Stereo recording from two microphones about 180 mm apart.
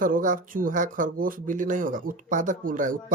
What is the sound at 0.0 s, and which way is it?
Speech, 50° right (ahead or behind).